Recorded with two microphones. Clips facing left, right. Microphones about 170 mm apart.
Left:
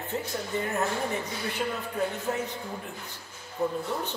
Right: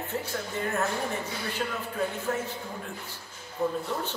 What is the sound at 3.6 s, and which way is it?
Speech, 20° left (ahead or behind).